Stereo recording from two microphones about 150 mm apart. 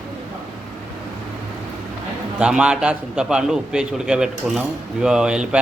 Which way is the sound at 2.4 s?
5° right (ahead or behind).